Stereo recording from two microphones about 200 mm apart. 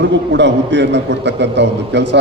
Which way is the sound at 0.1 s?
60° right (ahead or behind).